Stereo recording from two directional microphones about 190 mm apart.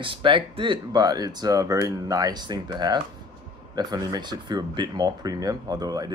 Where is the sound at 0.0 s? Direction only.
25° right (ahead or behind).